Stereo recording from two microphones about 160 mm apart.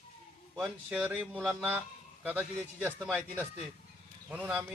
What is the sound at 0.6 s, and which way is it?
Speech, 10° right (ahead or behind).